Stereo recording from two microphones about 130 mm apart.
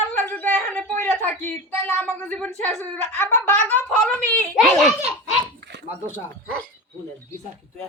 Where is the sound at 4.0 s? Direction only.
10° left (ahead or behind).